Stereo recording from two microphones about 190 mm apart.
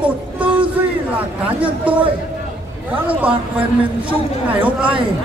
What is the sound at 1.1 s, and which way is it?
Speech, 5° right (ahead or behind).